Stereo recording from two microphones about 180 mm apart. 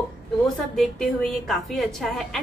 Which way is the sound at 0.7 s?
Centre (ahead or behind).